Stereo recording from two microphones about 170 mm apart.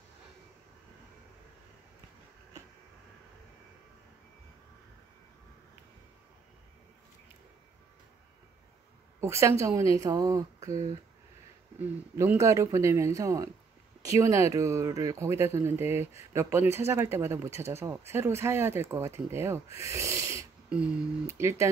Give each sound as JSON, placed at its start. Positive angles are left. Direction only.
{"t": 9.2, "sound": "speech", "side_deg": -15}
{"t": 11.8, "sound": "speech", "side_deg": -15}